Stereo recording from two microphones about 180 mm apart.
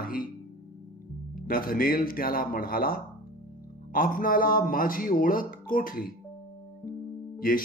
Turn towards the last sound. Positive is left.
turn(degrees=50)  # may be behind; listen again after turning